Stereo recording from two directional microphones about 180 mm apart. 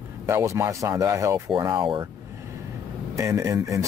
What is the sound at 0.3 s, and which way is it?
Speech, 15° right (ahead or behind).